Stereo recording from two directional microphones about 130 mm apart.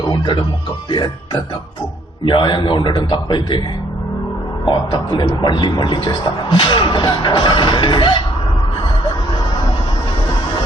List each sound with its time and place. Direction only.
0.9 s speech: 35° left (ahead or behind)
4.6 s speech: 35° left (ahead or behind)